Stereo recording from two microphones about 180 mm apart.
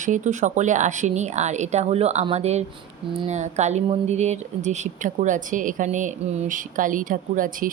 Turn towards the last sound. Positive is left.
turn(degrees=-50)  # may be behind; listen again after turning